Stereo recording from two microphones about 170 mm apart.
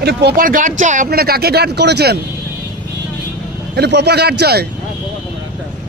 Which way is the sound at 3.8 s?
80° right.